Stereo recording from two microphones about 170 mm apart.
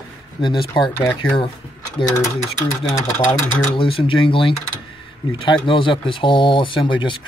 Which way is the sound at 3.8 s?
30° left (ahead or behind).